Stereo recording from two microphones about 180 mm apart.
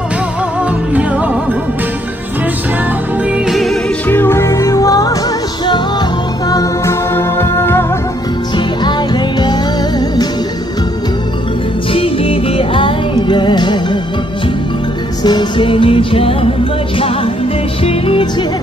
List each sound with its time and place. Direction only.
3.4 s music: centre (ahead or behind)
4.1 s music: 10° left (ahead or behind)
6.5 s music: 15° left (ahead or behind)
8.5 s music: 25° left (ahead or behind)
11.9 s music: 30° left (ahead or behind)
15.2 s music: 25° left (ahead or behind)
17.8 s music: 30° left (ahead or behind)